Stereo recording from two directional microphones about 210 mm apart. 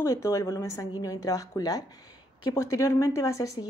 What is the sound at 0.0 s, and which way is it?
Speech, 15° left (ahead or behind).